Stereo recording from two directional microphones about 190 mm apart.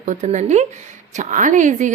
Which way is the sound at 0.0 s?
40° right (ahead or behind).